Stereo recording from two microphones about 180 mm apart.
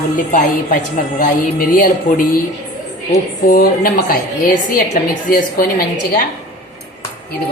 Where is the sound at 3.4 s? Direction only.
50° left (ahead or behind).